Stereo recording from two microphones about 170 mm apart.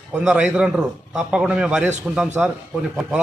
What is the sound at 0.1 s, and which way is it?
A man's voice, 5° right (ahead or behind).